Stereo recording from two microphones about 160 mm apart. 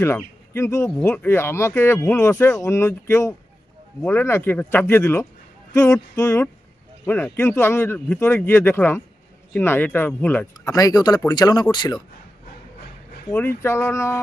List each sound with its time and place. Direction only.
0.0 s speech: 15° left (ahead or behind)
10.6 s speech: 20° left (ahead or behind)
13.3 s speech: 15° left (ahead or behind)